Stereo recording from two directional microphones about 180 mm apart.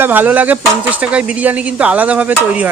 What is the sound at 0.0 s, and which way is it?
Speech, 10° right (ahead or behind).